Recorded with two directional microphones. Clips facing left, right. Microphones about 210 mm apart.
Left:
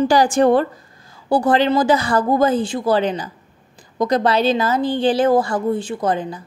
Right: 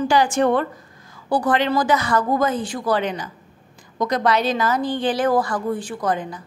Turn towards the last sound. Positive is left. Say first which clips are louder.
# left 3 dB
turn(degrees=30)  # may be behind; listen again after turning